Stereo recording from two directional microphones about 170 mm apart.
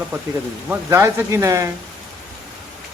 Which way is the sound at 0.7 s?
15° right (ahead or behind).